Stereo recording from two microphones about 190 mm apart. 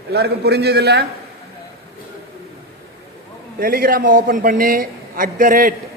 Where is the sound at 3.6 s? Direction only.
50° right (ahead or behind).